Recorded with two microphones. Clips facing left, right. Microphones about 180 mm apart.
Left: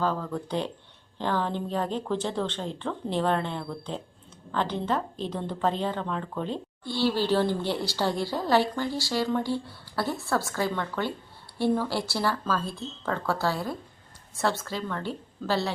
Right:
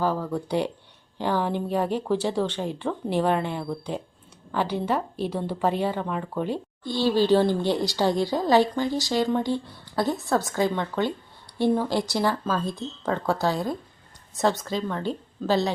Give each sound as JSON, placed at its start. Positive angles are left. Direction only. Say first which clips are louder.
{"t": 0.0, "sound": "a woman's voice", "louder": "right 3 dB", "side_deg": -10}